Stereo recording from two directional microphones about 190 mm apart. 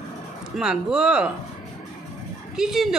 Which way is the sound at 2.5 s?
Centre (ahead or behind).